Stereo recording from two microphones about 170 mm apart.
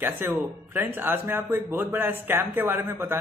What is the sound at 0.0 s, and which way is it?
Speech, 10° right (ahead or behind).